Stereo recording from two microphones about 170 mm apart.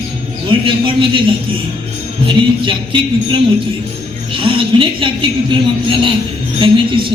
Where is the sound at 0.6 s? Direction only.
30° right (ahead or behind).